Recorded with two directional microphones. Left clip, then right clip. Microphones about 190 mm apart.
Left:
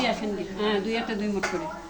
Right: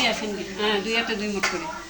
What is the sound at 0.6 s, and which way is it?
Speech, 15° left (ahead or behind).